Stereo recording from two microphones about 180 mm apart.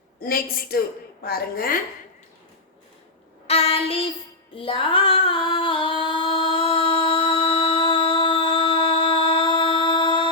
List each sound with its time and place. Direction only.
0.2 s a woman's voice: 55° left (ahead or behind)
3.4 s child singing: 35° left (ahead or behind)
4.5 s music: 30° left (ahead or behind)